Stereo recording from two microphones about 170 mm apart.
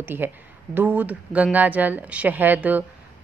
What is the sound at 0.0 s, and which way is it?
A woman's voice, 10° right (ahead or behind).